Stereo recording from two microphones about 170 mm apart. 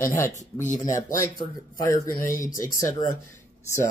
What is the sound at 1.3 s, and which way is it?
Speech, 20° left (ahead or behind).